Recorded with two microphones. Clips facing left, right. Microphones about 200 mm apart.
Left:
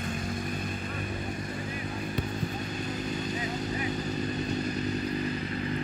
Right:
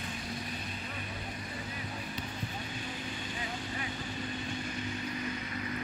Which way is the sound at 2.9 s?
40° left (ahead or behind).